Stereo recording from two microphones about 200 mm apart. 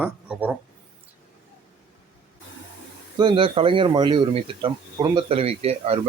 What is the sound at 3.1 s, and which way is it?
Speech, 20° right (ahead or behind).